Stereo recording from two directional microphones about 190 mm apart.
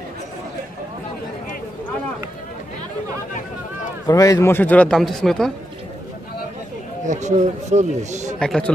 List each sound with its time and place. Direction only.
4.1 s a man's voice: 20° left (ahead or behind); by 5.5 s centre (ahead or behind)
7.1 s a man's voice: 40° right (ahead or behind)
8.4 s a man's voice: 5° left (ahead or behind)